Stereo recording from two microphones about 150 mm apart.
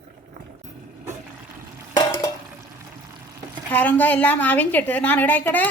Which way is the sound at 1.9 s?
25° left (ahead or behind).